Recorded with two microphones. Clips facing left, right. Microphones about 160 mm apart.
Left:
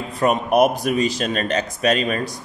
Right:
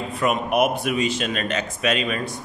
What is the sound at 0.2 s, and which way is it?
A man's voice, 35° left (ahead or behind).